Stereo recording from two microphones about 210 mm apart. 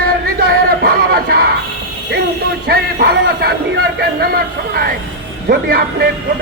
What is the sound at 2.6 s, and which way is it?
A man's voice, 45° right (ahead or behind).